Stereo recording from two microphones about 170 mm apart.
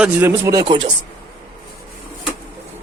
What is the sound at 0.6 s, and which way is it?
Speech, 25° right (ahead or behind).